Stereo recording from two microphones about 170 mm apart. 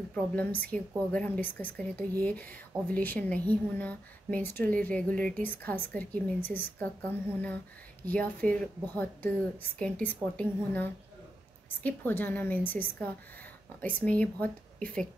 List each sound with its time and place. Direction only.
0.1 s a woman's voice: 10° left (ahead or behind)